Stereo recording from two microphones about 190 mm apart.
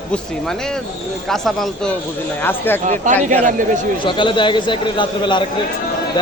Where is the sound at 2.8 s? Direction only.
40° right (ahead or behind).